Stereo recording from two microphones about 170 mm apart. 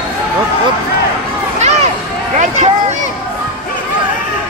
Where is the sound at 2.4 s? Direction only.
45° right (ahead or behind).